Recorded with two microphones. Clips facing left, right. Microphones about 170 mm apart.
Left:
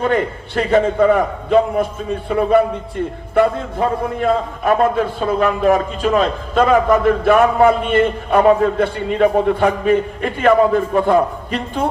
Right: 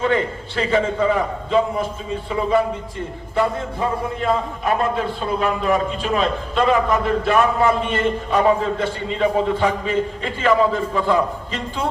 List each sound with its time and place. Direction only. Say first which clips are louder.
0.0 s a man's voice: left 2 dB; 50° left (ahead or behind)